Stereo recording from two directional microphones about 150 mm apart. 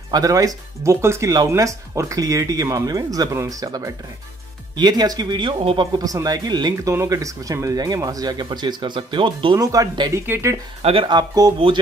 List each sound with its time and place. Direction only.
0.1 s speech: 25° right (ahead or behind)
5.9 s speech: 25° right (ahead or behind)
10.8 s speech: 40° right (ahead or behind)